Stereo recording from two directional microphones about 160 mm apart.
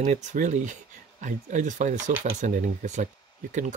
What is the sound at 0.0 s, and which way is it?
Speech, 50° right (ahead or behind).